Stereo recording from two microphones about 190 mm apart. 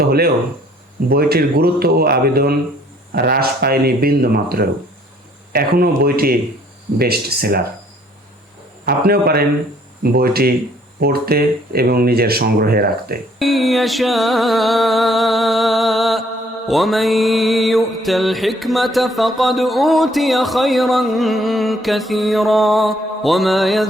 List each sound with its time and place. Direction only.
0.0 s speech: 55° right (ahead or behind)
9.0 s speech: 55° right (ahead or behind)
13.4 s music: centre (ahead or behind)